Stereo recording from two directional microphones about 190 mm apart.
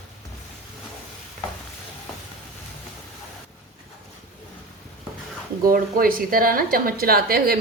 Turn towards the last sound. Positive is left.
turn(degrees=-50)  # may be behind; listen again after turning